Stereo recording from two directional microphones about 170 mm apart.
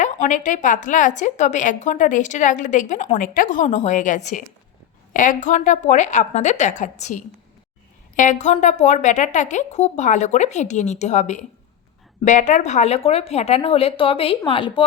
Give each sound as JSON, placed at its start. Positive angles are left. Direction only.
{"t": 0.0, "sound": "a woman's voice", "side_deg": 45}